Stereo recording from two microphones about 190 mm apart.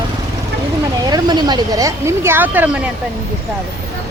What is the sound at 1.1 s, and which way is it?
Speech, 20° right (ahead or behind).